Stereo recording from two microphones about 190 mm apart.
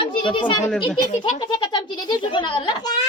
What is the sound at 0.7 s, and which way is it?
Speech, 5° left (ahead or behind).